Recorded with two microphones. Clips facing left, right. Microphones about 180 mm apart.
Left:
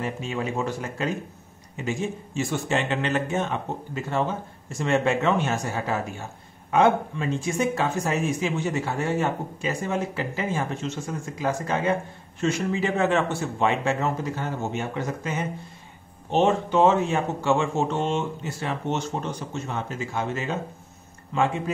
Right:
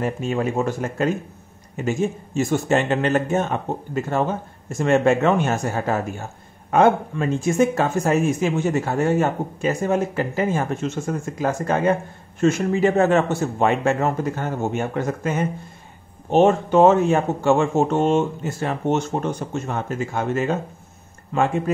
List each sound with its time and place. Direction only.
0.0 s speech: 50° right (ahead or behind)